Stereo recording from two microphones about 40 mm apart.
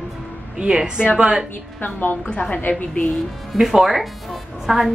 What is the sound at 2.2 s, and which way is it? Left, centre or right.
Speech, left.